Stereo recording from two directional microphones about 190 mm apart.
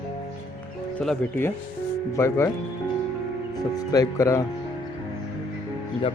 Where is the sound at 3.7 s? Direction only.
20° left (ahead or behind).